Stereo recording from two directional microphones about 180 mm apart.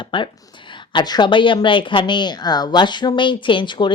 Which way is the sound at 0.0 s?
25° left (ahead or behind).